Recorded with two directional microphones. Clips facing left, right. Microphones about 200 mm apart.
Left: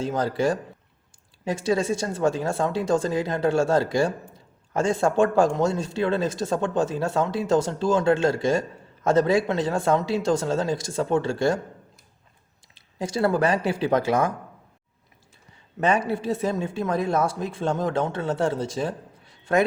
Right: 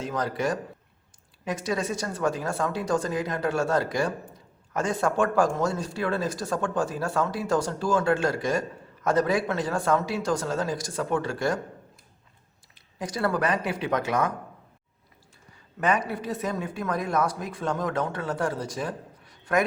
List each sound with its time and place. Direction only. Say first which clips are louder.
0.0 s speech: left 4 dB; 30° left (ahead or behind)
12.7 s speech: left 5 dB; 30° left (ahead or behind)
15.8 s speech: left 3 dB; 30° left (ahead or behind)